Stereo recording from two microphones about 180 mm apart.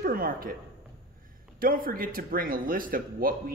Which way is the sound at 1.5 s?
50° right (ahead or behind).